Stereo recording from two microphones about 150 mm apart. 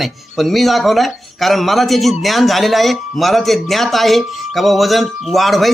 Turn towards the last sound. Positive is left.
turn(degrees=0)  # may be behind; listen again after turning